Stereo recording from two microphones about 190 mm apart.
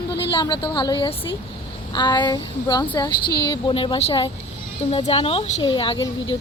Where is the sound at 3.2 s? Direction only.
55° left (ahead or behind).